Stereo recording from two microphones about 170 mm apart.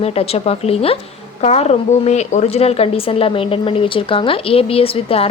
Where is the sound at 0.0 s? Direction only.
35° left (ahead or behind).